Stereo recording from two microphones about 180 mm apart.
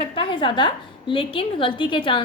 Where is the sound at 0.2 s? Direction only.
30° left (ahead or behind).